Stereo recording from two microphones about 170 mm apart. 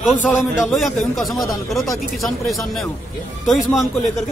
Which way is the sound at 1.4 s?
20° left (ahead or behind).